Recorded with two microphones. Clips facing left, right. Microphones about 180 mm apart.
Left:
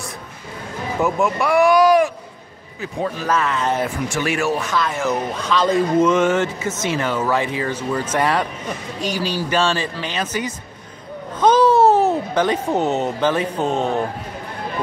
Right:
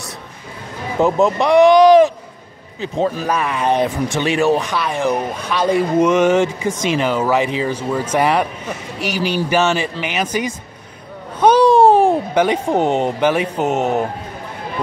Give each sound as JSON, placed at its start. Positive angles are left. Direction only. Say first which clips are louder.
{"t": 1.0, "sound": "speech", "louder": "right 5 dB", "side_deg": -35}
{"t": 1.4, "sound": "a sound", "louder": "right 5 dB", "side_deg": -20}
{"t": 3.3, "sound": "speech", "louder": "right 2 dB", "side_deg": -15}
{"t": 9.0, "sound": "speech", "louder": "right 3 dB", "side_deg": -75}
{"t": 9.5, "sound": "speech", "louder": "right 2 dB", "side_deg": -10}
{"t": 11.3, "sound": "babbling", "louder": "right 3 dB", "side_deg": -10}
{"t": 12.7, "sound": "speech", "louder": "right 5 dB", "side_deg": -25}
{"t": 13.2, "sound": "speech", "louder": "right 2 dB", "side_deg": -10}
{"t": 13.7, "sound": "speech", "louder": "right 4 dB", "side_deg": -20}